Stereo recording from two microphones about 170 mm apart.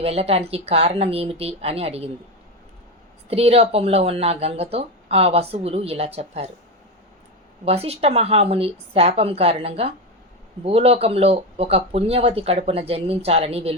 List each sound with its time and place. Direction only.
0.0 s speech: 35° right (ahead or behind)
3.2 s speech: 35° right (ahead or behind)
7.6 s speech: 35° right (ahead or behind)